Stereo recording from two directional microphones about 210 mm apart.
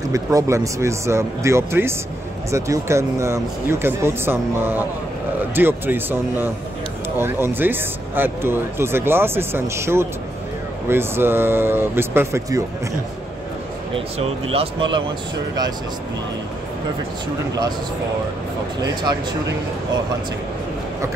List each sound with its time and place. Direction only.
0.1 s speech: 15° right (ahead or behind)
13.9 s speech: 30° right (ahead or behind)